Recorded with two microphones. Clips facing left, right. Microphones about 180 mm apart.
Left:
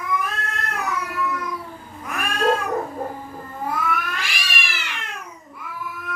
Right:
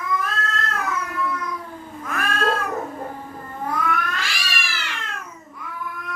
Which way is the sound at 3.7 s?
10° left (ahead or behind).